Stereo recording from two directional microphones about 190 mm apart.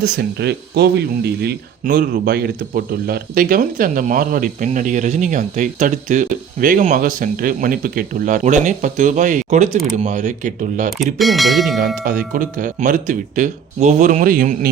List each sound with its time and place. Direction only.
0.0 s speech: 60° right (ahead or behind)
1.8 s speech: 45° right (ahead or behind)
10.9 s speech: centre (ahead or behind)
12.0 s speech: 45° right (ahead or behind)